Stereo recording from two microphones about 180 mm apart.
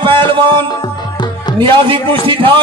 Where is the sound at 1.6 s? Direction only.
25° right (ahead or behind).